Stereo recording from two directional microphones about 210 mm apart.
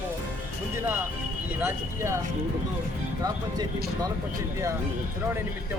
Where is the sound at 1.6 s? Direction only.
15° right (ahead or behind).